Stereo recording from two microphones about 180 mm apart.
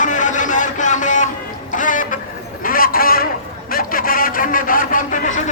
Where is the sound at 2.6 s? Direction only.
55° left (ahead or behind).